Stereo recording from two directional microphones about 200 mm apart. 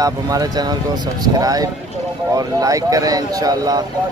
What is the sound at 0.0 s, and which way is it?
Speech, 20° right (ahead or behind).